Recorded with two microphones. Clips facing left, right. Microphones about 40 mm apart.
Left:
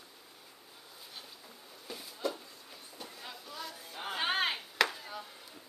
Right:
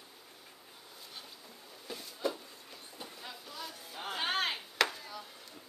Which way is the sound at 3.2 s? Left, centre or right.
Centre.